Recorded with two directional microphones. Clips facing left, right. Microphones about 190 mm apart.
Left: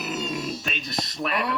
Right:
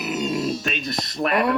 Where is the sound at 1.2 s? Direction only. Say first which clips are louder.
Right 7 dB; 50° right (ahead or behind).